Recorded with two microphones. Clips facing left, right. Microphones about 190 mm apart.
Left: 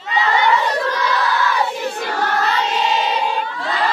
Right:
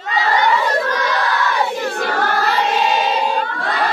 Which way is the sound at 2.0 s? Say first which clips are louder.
Right 1 dB; 55° right (ahead or behind).